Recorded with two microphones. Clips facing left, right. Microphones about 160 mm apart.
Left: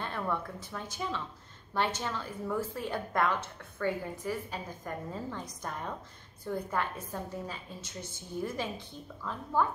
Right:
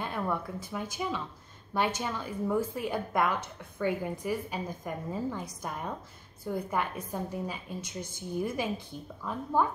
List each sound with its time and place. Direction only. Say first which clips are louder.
0.0 s a woman's voice: right 2 dB; 10° right (ahead or behind)